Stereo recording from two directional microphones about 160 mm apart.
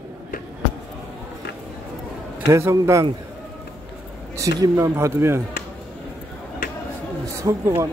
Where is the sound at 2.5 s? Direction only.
20° right (ahead or behind).